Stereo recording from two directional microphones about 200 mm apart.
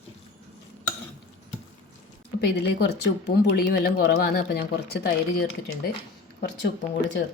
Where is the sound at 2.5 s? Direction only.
60° left (ahead or behind).